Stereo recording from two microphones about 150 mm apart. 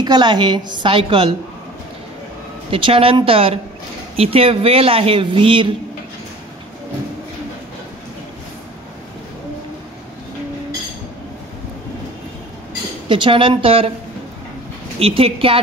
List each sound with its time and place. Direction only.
0.0 s speech: 30° right (ahead or behind)
2.7 s speech: 40° right (ahead or behind)
13.1 s speech: 35° right (ahead or behind)
15.0 s speech: 40° right (ahead or behind)